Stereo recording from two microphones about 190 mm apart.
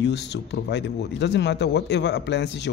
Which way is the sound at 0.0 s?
65° left (ahead or behind).